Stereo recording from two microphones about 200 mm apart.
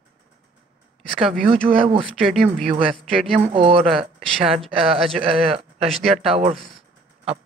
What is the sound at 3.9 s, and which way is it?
Speech, centre (ahead or behind).